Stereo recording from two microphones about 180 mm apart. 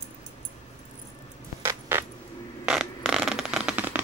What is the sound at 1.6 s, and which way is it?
Keys jangling, 15° right (ahead or behind).